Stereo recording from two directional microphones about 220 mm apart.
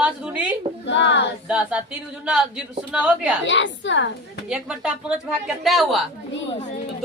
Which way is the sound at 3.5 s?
55° left (ahead or behind).